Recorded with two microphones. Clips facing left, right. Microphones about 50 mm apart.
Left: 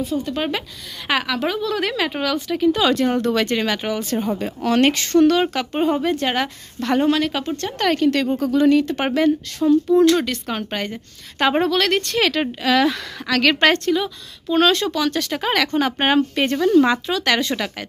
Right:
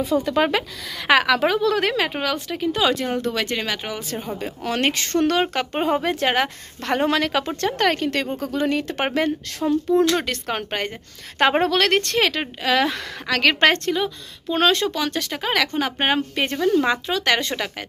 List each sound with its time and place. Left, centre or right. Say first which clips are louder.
0.3 s speech: right 4 dB; right
1.8 s speech: right 1 dB; right
2.5 s speech: left 5 dB; centre
3.1 s speech: left 4 dB; centre
4.9 s a woman's voice: left 5 dB; right
5.2 s speech: left 3 dB; right
5.7 s a woman's voice: left 2 dB; right
7.1 s speech: left 2 dB; right
7.8 s a woman's voice: left 5 dB; right
10.2 s a woman's voice: left 1 dB; right
12.2 s a woman's voice: left 2 dB; centre
15.3 s speech: left 1 dB; centre; by 17.6 s right